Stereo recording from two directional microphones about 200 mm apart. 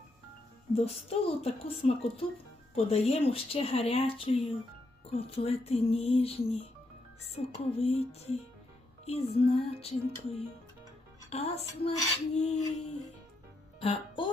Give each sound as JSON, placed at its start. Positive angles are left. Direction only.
{"t": 0.7, "sound": "speech", "side_deg": 30}
{"t": 9.0, "sound": "speech", "side_deg": 30}
{"t": 13.7, "sound": "music", "side_deg": 25}